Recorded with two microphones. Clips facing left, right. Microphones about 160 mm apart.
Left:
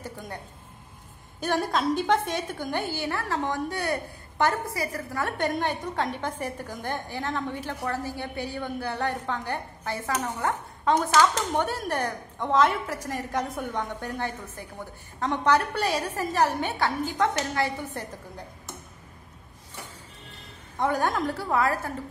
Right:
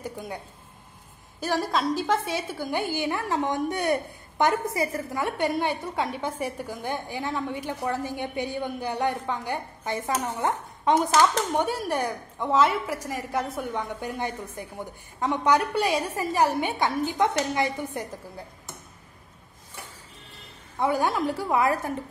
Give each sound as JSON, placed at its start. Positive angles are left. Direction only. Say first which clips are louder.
{"t": 0.0, "sound": "speech", "louder": "right 3 dB", "side_deg": -10}
{"t": 1.4, "sound": "a woman's voice", "louder": "even", "side_deg": 0}
{"t": 20.8, "sound": "a woman's voice", "louder": "right 1 dB", "side_deg": -10}